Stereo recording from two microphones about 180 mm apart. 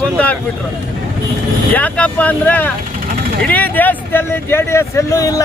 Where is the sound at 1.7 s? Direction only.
10° left (ahead or behind).